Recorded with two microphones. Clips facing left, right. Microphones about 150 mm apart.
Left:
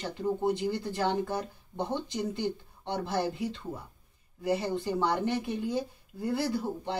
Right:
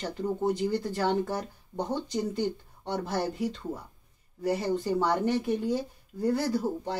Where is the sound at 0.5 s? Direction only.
40° right (ahead or behind).